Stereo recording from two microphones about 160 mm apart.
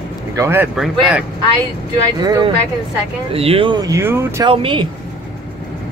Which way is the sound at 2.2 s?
25° right (ahead or behind).